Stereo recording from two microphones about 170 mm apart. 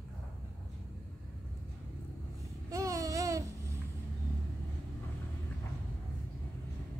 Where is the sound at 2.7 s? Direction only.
20° right (ahead or behind).